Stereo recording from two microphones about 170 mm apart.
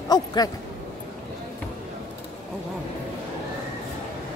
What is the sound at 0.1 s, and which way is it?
Speech, 25° left (ahead or behind).